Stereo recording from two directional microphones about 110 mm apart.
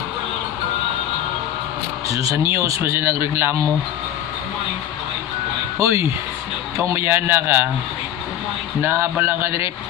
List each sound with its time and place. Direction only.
2.0 s speech: 30° right (ahead or behind)
5.8 s speech: 25° right (ahead or behind)
8.8 s speech: 20° right (ahead or behind)